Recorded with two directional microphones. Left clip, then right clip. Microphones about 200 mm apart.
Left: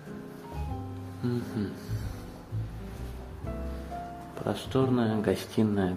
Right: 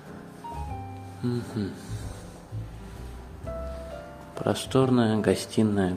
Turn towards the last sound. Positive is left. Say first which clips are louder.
# right 3 dB
turn(degrees=-15)  # may be behind; listen again after turning